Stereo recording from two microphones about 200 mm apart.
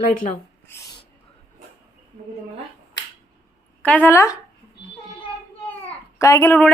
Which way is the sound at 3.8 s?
10° left (ahead or behind).